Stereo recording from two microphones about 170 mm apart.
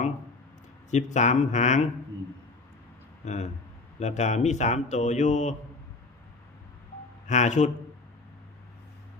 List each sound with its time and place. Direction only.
0.9 s speech: 45° left (ahead or behind)
3.2 s speech: 45° left (ahead or behind)
7.3 s speech: 45° left (ahead or behind)